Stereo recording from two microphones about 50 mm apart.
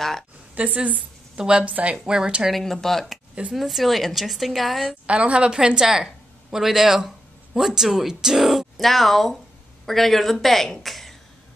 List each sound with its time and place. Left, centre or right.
0.6 s a woman's voice: right
2.5 s speech: centre
5.0 s a woman's voice: right; by 11.1 s centre